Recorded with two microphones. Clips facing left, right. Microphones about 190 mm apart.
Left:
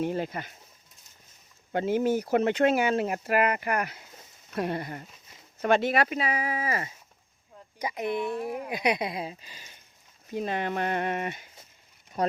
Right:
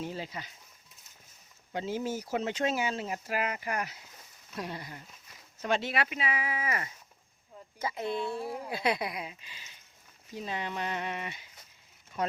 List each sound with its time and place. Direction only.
0.0 s speech: 55° left (ahead or behind)
1.7 s speech: 60° left (ahead or behind); by 6.9 s 30° left (ahead or behind)
7.8 s speech: 15° left (ahead or behind); by 9.7 s 45° left (ahead or behind)
10.3 s speech: 55° left (ahead or behind)
12.2 s speech: 35° left (ahead or behind)